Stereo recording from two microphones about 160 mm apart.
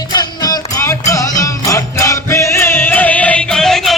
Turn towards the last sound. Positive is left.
turn(degrees=0)  # may be behind; listen again after turning